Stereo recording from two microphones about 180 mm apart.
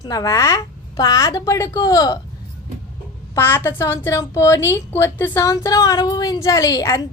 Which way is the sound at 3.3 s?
10° left (ahead or behind).